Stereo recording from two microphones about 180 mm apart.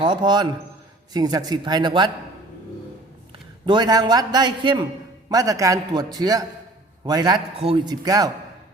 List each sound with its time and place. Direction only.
0.0 s a man's voice: 25° right (ahead or behind)
3.7 s a man's voice: 25° right (ahead or behind)